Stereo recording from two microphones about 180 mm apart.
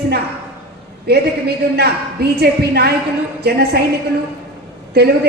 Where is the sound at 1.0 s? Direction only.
65° right (ahead or behind).